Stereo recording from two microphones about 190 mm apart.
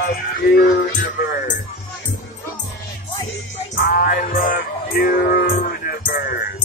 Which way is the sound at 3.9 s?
50° left (ahead or behind).